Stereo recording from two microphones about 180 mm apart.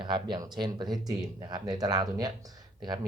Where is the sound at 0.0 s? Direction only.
25° right (ahead or behind).